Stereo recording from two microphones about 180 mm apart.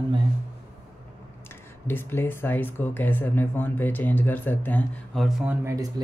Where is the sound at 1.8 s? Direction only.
10° left (ahead or behind).